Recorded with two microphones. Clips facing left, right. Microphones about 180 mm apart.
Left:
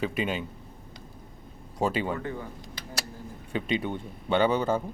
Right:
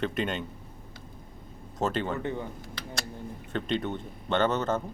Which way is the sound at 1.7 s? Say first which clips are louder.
Left 1 dB; 10° left (ahead or behind).